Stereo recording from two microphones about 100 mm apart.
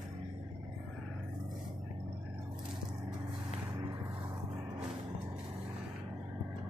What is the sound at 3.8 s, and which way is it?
Vehicle, 45° right (ahead or behind).